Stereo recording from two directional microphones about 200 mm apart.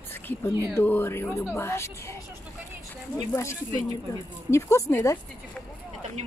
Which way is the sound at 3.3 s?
15° left (ahead or behind).